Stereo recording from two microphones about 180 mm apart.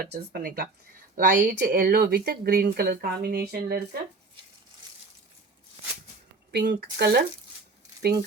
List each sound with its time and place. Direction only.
0.0 s speech: 55° right (ahead or behind)
1.1 s speech: 45° right (ahead or behind)
6.5 s speech: 65° right (ahead or behind)